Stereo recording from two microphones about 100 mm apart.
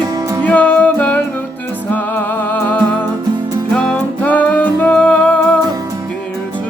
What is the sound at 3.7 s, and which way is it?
Music, 10° left (ahead or behind).